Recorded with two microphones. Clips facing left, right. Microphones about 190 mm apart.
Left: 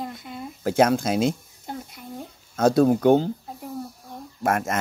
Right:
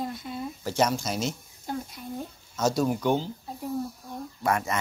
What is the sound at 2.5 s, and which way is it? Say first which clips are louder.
Speech: left 7 dB; 55° left (ahead or behind).